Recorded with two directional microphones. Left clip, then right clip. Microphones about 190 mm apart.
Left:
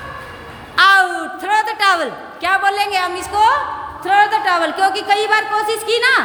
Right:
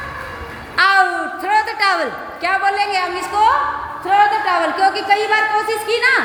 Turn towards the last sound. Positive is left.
turn(degrees=15)  # may be behind; listen again after turning